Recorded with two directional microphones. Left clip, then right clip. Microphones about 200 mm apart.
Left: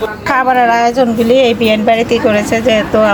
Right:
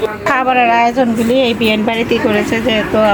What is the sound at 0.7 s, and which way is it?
Speech, 15° left (ahead or behind).